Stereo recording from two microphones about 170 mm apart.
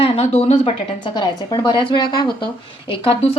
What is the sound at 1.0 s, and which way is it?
Speech, 25° left (ahead or behind).